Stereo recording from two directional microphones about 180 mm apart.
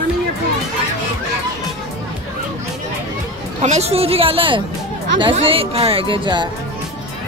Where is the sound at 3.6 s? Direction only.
35° right (ahead or behind).